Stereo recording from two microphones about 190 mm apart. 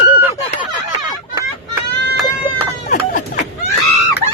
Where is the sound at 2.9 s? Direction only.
45° left (ahead or behind).